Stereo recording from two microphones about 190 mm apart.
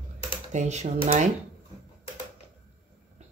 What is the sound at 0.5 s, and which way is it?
Speech, 40° right (ahead or behind).